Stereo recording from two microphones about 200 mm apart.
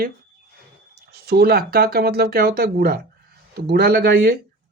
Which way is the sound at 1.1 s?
50° right (ahead or behind).